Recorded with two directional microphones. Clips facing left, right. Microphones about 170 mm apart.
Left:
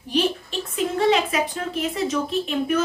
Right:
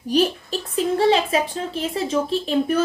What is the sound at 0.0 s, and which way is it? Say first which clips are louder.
A woman's voice: right 3 dB; 40° right (ahead or behind).